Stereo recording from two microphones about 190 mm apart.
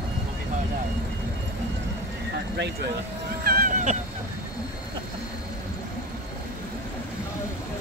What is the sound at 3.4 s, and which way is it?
Hubbub, 50° right (ahead or behind).